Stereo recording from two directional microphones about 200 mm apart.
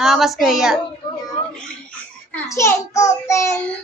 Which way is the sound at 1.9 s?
10° left (ahead or behind).